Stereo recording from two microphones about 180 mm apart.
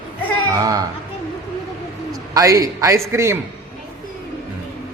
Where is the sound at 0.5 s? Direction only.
20° right (ahead or behind).